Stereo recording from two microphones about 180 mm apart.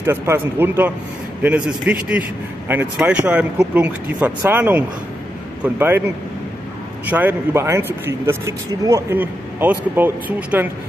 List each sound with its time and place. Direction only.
0.0 s speech: 15° right (ahead or behind)